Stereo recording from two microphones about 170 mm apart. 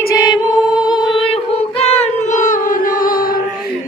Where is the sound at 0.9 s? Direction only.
25° left (ahead or behind); by 3.3 s 60° left (ahead or behind).